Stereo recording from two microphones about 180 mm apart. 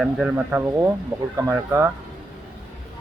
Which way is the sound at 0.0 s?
5° right (ahead or behind).